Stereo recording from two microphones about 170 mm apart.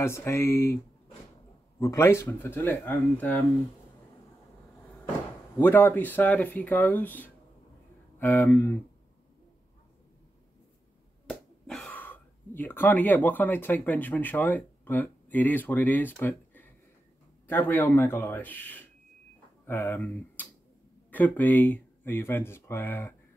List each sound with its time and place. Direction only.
0.0 s speech: 15° left (ahead or behind)
1.8 s speech: 15° left (ahead or behind)
5.6 s speech: 10° left (ahead or behind)
11.2 s speech: 5° left (ahead or behind)